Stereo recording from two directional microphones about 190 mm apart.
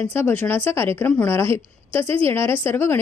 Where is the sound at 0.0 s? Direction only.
10° left (ahead or behind).